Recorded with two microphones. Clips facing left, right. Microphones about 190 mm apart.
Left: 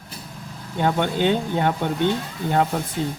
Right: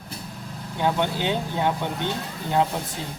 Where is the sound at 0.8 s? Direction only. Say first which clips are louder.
Left 3 dB; 55° left (ahead or behind).